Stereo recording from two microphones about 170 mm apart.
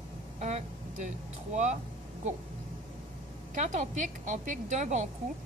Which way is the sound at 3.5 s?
45° right (ahead or behind).